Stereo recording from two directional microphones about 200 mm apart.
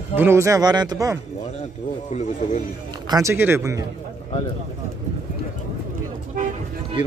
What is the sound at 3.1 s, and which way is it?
Speech, 15° right (ahead or behind).